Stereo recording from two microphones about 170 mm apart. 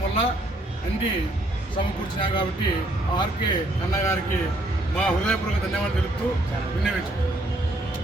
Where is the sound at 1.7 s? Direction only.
30° left (ahead or behind).